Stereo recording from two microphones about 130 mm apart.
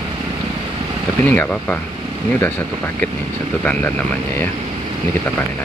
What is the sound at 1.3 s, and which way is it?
Speech, 10° left (ahead or behind).